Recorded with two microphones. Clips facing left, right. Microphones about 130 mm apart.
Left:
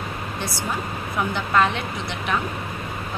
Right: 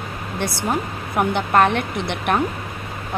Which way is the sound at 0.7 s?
60° right (ahead or behind).